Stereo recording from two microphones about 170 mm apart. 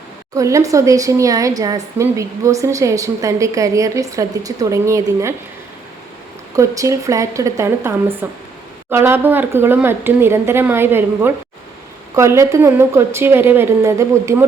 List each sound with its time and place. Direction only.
0.3 s speech: 20° right (ahead or behind)
6.6 s speech: 20° right (ahead or behind)